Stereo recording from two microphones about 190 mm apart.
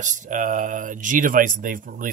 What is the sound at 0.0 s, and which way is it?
Speech, 40° right (ahead or behind).